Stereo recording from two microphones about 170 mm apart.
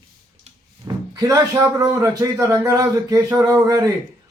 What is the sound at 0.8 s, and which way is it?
Speech, 20° right (ahead or behind).